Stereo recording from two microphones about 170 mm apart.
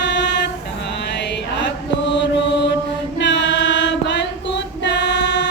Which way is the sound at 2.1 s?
90° left.